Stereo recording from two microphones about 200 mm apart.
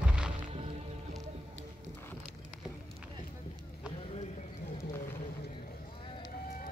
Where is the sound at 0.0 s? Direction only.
5° right (ahead or behind).